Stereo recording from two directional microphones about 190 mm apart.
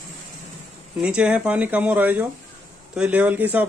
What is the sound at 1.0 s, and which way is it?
A man's voice, 5° right (ahead or behind).